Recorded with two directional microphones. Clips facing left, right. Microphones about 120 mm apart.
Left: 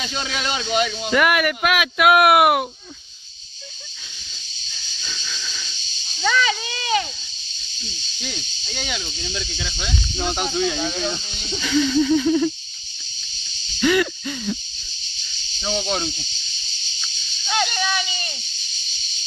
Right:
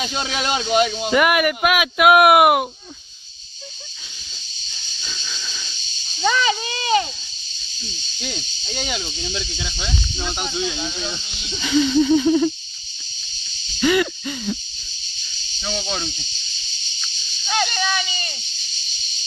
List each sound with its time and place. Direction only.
1.1 s speech: 5° right (ahead or behind)
5.0 s hiss: 10° right (ahead or behind)
6.2 s speech: 30° right (ahead or behind)
8.7 s speech: 30° right (ahead or behind)
9.7 s speech: centre (ahead or behind)
10.1 s speech: 45° left (ahead or behind)
11.6 s speech: 20° right (ahead or behind)
13.7 s hoot: 5° right (ahead or behind)
15.6 s speech: 20° left (ahead or behind)
17.0 s speech: centre (ahead or behind)